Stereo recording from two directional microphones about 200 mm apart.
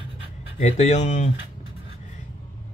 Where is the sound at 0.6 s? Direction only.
35° left (ahead or behind).